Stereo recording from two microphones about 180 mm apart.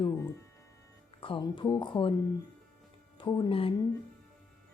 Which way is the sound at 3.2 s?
25° left (ahead or behind).